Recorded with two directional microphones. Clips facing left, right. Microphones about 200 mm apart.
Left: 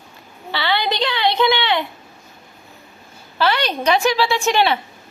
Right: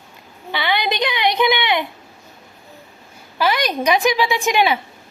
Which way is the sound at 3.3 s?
10° right (ahead or behind).